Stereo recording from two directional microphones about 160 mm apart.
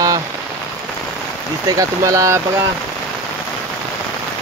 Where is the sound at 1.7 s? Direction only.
20° right (ahead or behind).